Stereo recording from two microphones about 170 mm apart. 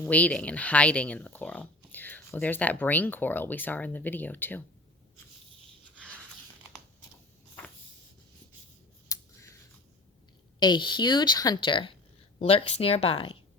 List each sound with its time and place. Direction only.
0.0 s speech: 10° left (ahead or behind)
9.0 s scissors: 15° left (ahead or behind)
10.6 s speech: 25° left (ahead or behind)